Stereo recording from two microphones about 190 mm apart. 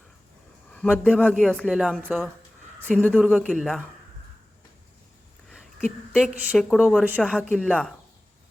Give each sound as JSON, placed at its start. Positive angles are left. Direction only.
{"t": 0.7, "sound": "a man's voice", "side_deg": 10}
{"t": 6.1, "sound": "a woman's voice", "side_deg": -5}
{"t": 7.2, "sound": "a man's voice", "side_deg": 5}